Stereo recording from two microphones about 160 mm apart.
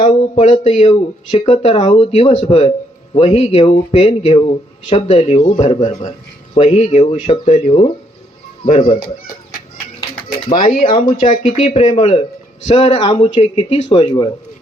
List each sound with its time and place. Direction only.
0.0 s speech: 35° left (ahead or behind)
0.6 s speech: 45° left (ahead or behind)
1.8 s speech: 35° left (ahead or behind)
2.1 s speech: 45° left (ahead or behind)
4.9 s speech: 45° left (ahead or behind)
8.6 s speech: 55° left (ahead or behind)
10.5 s speech: 60° left (ahead or behind)
10.8 s speech: 30° left (ahead or behind)
12.6 s speech: 45° left (ahead or behind); by 14.3 s 30° left (ahead or behind)